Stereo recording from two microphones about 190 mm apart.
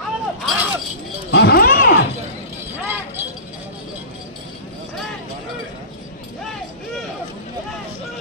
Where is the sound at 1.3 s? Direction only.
60° left (ahead or behind).